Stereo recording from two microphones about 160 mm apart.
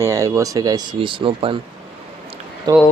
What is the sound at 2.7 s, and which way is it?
Speech, 25° right (ahead or behind).